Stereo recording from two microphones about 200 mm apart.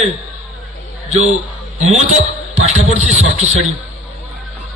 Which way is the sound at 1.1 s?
35° right (ahead or behind).